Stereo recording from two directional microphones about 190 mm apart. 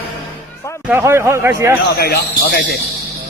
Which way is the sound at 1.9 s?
55° left (ahead or behind).